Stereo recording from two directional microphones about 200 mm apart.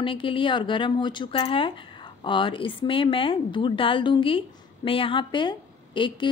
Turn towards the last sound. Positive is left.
turn(degrees=25)  # may be behind; listen again after turning